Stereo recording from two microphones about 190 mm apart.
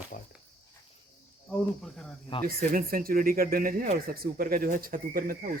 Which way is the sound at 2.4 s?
50° right (ahead or behind).